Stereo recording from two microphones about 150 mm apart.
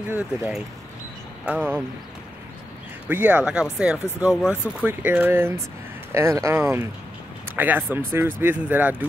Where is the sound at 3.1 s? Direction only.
10° right (ahead or behind).